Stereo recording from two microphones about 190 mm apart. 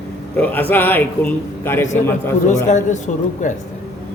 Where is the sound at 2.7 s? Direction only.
40° left (ahead or behind).